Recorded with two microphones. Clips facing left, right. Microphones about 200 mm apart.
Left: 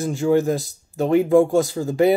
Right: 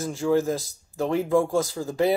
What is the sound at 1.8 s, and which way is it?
Speech, 40° left (ahead or behind).